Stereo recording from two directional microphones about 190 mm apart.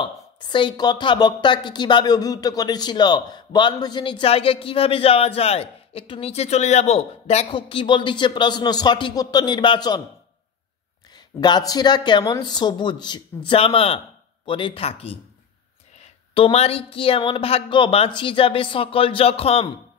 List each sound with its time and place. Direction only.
0.0 s speech: 25° left (ahead or behind)
11.1 s speech: 20° left (ahead or behind)
16.3 s speech: 30° left (ahead or behind)